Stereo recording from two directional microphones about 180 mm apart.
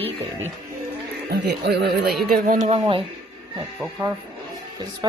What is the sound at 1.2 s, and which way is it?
Speech, 65° right (ahead or behind).